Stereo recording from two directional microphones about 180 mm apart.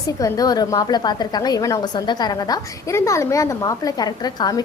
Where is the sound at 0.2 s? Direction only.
20° left (ahead or behind).